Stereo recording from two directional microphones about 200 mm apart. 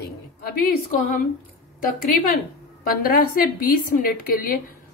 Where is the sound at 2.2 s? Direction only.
45° left (ahead or behind).